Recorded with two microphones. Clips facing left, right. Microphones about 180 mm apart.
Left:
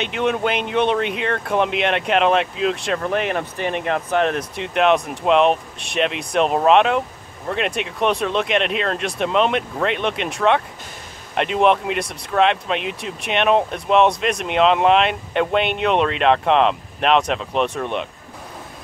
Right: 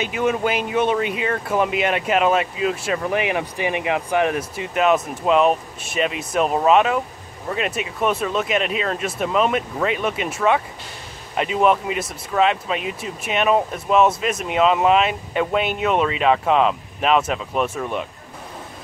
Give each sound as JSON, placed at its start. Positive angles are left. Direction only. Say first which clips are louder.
{"t": 0.0, "sound": "speech", "louder": "even", "side_deg": -5}